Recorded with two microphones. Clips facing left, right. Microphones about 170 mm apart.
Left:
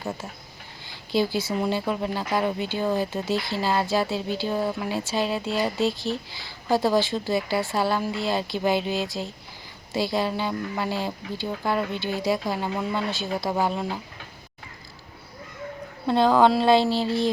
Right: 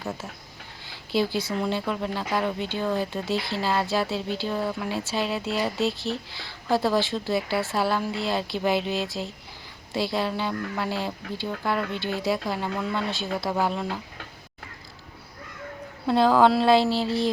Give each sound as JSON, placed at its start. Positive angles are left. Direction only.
{"t": 1.1, "sound": "speech", "side_deg": 0}
{"t": 2.3, "sound": "speech", "side_deg": 15}
{"t": 2.6, "sound": "speech", "side_deg": 5}
{"t": 16.0, "sound": "speech", "side_deg": -5}